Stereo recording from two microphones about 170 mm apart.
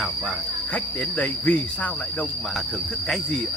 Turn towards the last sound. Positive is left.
turn(degrees=10)  # may be behind; listen again after turning